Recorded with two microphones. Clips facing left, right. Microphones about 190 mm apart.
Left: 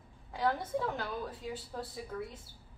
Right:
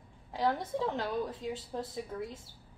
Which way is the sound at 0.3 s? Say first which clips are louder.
Right 1 dB; 25° right (ahead or behind).